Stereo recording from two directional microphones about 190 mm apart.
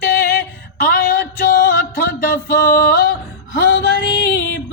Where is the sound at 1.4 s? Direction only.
55° left (ahead or behind).